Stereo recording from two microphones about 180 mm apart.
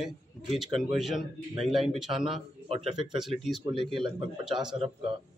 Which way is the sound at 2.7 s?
35° right (ahead or behind).